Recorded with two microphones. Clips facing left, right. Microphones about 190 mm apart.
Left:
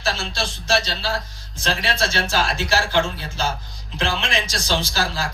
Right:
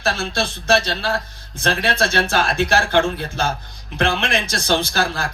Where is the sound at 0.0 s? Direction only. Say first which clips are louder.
Right 4 dB; 55° right (ahead or behind).